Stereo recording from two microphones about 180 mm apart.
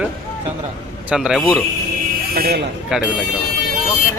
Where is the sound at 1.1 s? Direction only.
5° right (ahead or behind).